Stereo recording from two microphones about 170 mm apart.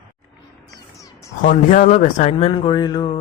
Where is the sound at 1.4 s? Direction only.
50° left (ahead or behind).